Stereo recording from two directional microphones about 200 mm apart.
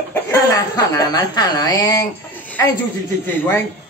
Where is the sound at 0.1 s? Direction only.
15° left (ahead or behind).